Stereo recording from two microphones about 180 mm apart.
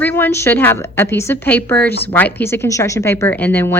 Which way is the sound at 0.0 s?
10° left (ahead or behind).